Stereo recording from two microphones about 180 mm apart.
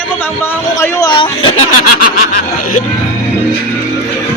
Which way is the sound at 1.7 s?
45° left (ahead or behind).